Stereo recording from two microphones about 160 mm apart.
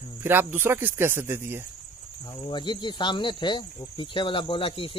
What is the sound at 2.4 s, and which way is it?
Speech, 30° left (ahead or behind).